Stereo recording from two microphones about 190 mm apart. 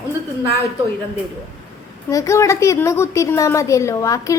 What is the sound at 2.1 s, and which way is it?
A woman's voice, 15° left (ahead or behind).